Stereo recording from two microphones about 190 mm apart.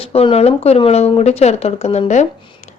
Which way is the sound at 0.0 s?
30° left (ahead or behind).